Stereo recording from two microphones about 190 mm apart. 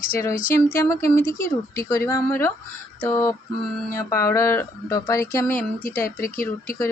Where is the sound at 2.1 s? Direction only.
15° left (ahead or behind).